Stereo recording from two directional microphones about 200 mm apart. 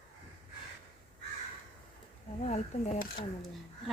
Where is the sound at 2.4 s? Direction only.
35° left (ahead or behind).